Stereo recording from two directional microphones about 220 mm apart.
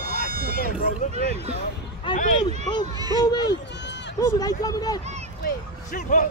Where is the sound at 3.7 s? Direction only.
55° left (ahead or behind).